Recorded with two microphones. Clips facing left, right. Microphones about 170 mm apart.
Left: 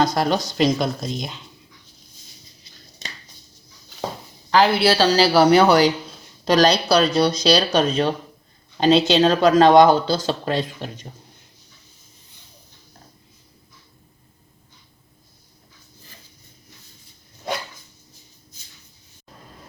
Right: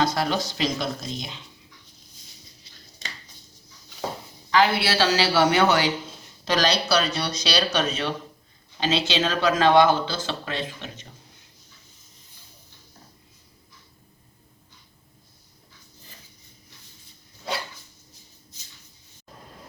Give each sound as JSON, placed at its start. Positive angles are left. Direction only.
{"t": 0.0, "sound": "speech", "side_deg": 45}
{"t": 4.5, "sound": "speech", "side_deg": 35}